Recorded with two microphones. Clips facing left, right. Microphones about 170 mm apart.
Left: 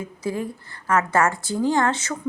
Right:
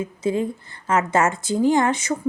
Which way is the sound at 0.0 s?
20° right (ahead or behind).